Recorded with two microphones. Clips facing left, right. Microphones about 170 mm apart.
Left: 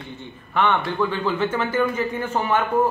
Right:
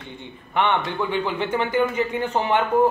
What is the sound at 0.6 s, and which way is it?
A man's voice, 15° right (ahead or behind).